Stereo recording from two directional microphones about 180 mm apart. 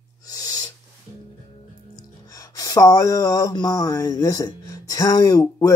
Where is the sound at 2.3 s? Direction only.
20° left (ahead or behind).